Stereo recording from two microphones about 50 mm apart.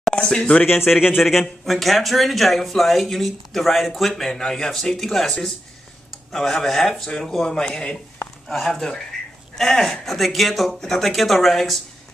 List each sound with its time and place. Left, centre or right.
0.1 s speech: centre
0.4 s speech: left
0.8 s speech: centre